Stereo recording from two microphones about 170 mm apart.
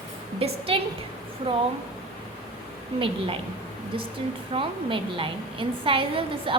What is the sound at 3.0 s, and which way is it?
Speech, 30° right (ahead or behind).